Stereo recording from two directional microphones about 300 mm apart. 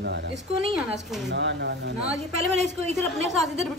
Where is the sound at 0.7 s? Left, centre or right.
Centre.